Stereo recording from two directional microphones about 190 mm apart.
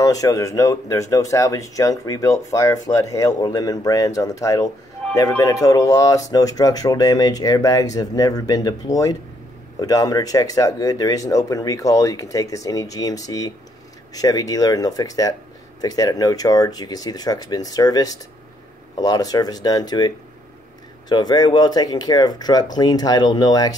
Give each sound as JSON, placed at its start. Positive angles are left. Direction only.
{"t": 0.0, "sound": "speech", "side_deg": 20}
{"t": 21.1, "sound": "speech", "side_deg": 20}